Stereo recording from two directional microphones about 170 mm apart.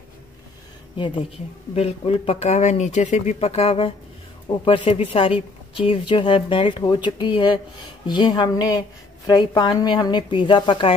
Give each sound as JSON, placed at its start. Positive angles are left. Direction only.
{"t": 0.9, "sound": "a woman's voice", "side_deg": 30}